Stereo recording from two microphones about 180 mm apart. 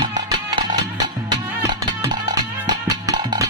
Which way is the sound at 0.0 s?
25° right (ahead or behind).